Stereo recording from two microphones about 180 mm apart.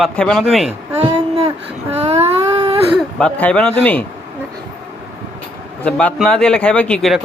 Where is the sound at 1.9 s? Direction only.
35° right (ahead or behind).